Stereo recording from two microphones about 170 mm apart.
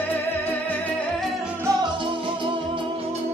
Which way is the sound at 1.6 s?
25° right (ahead or behind).